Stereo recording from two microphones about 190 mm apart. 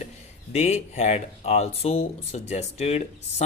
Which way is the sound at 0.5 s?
35° left (ahead or behind).